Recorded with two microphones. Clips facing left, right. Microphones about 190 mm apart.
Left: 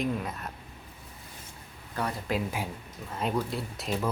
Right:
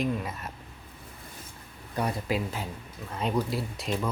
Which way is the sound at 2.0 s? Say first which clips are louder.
Right 2 dB; 15° right (ahead or behind).